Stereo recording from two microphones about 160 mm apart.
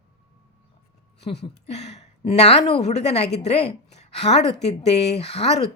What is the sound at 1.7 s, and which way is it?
A woman's voice, 45° left (ahead or behind).